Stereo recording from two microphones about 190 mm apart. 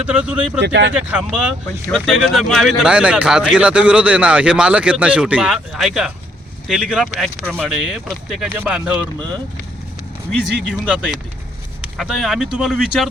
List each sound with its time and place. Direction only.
0.0 s speech: 5° right (ahead or behind)
0.6 s speech: 70° right (ahead or behind)
0.9 s speech: 5° right (ahead or behind)
10.8 s speech: 5° right (ahead or behind)